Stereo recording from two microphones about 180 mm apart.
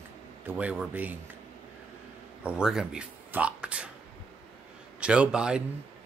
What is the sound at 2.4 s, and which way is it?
Speech, 5° right (ahead or behind).